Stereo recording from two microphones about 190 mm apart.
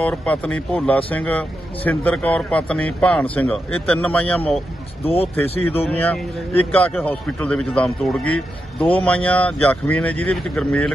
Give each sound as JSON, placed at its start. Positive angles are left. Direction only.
{"t": 0.0, "sound": "a man's voice", "side_deg": 5}
{"t": 5.0, "sound": "speech", "side_deg": 30}
{"t": 5.9, "sound": "a man's voice", "side_deg": 10}
{"t": 8.3, "sound": "speech", "side_deg": 30}
{"t": 8.9, "sound": "a man's voice", "side_deg": 10}